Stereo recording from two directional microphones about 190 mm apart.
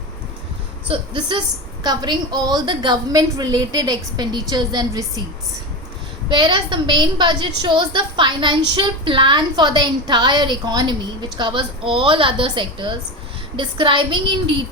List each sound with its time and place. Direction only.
0.9 s a woman's voice: 25° right (ahead or behind)
6.3 s a woman's voice: 25° right (ahead or behind)